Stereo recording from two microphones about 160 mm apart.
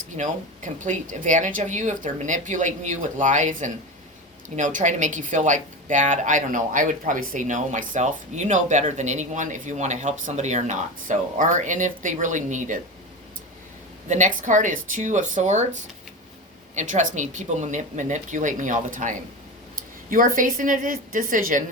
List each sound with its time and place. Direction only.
0.2 s speech: 55° right (ahead or behind)
14.1 s a woman's voice: 50° right (ahead or behind)